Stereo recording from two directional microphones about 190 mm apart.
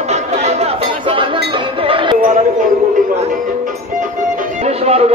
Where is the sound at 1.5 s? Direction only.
25° right (ahead or behind).